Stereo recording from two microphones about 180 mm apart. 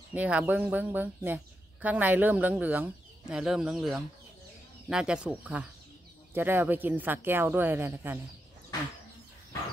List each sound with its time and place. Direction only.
0.1 s speech: 10° right (ahead or behind)